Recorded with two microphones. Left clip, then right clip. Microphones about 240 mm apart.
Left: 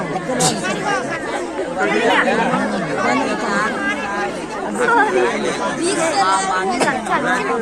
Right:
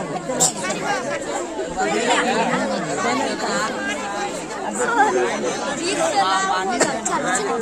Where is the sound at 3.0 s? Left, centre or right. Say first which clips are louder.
Left 5 dB; right.